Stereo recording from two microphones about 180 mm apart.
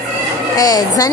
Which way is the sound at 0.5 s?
20° left (ahead or behind).